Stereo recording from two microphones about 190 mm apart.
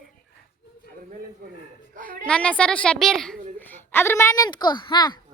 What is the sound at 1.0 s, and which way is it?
Speech, 45° right (ahead or behind).